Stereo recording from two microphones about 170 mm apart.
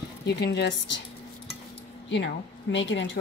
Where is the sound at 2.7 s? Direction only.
90° left.